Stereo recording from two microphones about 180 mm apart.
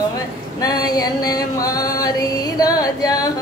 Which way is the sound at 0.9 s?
20° left (ahead or behind).